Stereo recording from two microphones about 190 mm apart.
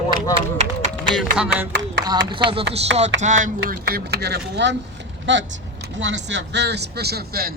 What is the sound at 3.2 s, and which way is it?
Speech, 40° right (ahead or behind).